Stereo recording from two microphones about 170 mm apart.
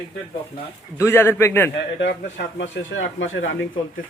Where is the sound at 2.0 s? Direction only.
90° left.